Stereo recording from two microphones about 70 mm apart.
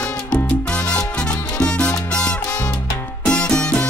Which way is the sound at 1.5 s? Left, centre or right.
Centre.